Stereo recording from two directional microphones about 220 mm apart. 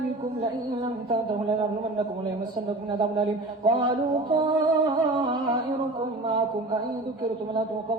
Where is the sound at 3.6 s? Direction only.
20° right (ahead or behind).